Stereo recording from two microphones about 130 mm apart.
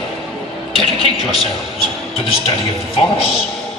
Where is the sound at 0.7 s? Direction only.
45° left (ahead or behind).